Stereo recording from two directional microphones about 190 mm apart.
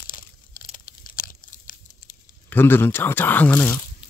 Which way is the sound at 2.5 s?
10° left (ahead or behind).